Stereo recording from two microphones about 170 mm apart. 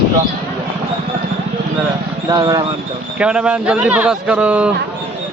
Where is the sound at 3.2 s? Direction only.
5° right (ahead or behind).